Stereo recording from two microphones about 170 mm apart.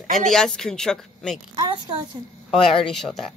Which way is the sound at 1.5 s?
25° right (ahead or behind).